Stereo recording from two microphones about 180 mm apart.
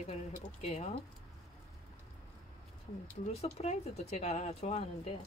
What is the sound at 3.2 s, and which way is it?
Speech, 35° left (ahead or behind).